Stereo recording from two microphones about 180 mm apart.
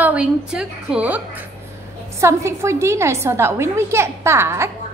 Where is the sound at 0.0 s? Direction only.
5° right (ahead or behind).